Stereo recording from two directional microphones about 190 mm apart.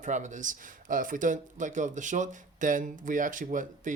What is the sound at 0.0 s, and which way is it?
Speech, 40° right (ahead or behind).